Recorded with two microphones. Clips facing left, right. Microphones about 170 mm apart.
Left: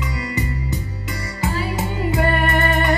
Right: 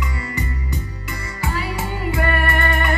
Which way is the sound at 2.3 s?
20° left (ahead or behind).